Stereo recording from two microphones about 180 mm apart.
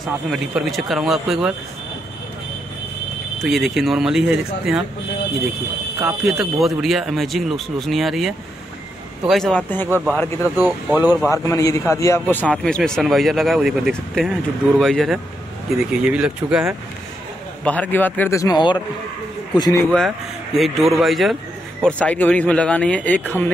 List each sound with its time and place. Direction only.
0.3 s a man's voice: centre (ahead or behind)
3.3 s a man's voice: centre (ahead or behind)
5.9 s a man's voice: centre (ahead or behind)
10.5 s speech: 10° right (ahead or behind)
11.2 s a man's voice: 15° left (ahead or behind); by 16.7 s 5° right (ahead or behind)
17.6 s speech: 10° left (ahead or behind)
20.1 s a man's voice: centre (ahead or behind)